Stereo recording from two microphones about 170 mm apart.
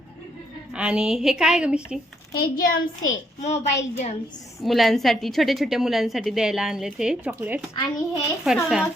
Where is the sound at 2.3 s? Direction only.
60° left (ahead or behind).